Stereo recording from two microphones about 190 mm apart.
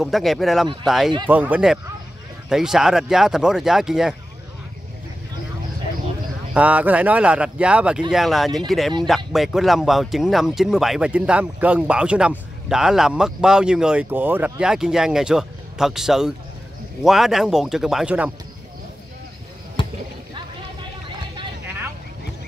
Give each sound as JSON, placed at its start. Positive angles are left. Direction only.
{"t": 0.0, "sound": "speech", "side_deg": 0}
{"t": 6.5, "sound": "speech", "side_deg": -5}
{"t": 19.8, "sound": "rowboat", "side_deg": 25}